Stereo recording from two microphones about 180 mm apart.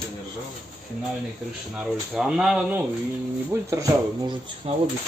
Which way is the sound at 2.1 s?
5° right (ahead or behind).